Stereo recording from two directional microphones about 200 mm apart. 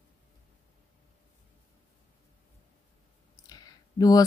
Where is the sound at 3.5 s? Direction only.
20° left (ahead or behind).